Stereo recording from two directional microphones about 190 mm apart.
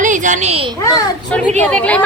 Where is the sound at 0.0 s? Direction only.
40° right (ahead or behind).